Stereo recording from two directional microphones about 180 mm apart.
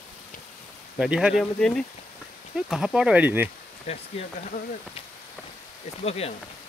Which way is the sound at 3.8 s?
35° left (ahead or behind).